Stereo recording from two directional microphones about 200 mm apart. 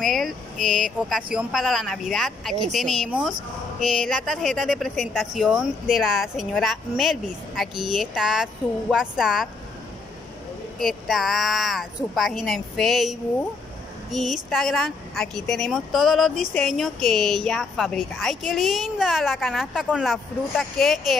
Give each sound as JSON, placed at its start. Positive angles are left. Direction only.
{"t": 0.0, "sound": "a woman's voice", "side_deg": 0}
{"t": 11.1, "sound": "a woman's voice", "side_deg": 0}